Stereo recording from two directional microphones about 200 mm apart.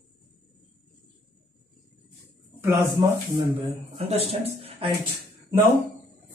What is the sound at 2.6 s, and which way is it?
Speech, 15° right (ahead or behind).